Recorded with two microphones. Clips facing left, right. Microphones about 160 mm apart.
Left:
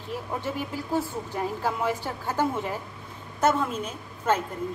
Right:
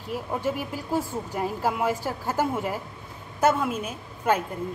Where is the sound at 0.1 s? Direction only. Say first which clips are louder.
Right 3 dB; 10° right (ahead or behind).